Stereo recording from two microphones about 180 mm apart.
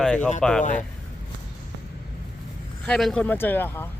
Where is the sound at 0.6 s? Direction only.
45° left (ahead or behind).